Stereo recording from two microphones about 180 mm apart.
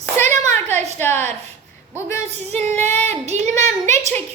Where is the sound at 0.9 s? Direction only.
10° left (ahead or behind).